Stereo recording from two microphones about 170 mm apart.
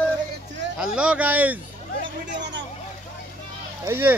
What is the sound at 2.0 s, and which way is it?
Hubbub, 90° right.